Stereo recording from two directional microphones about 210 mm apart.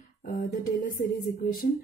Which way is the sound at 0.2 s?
40° left (ahead or behind).